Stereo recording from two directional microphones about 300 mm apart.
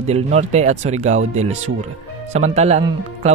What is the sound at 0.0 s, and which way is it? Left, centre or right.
Speech, right.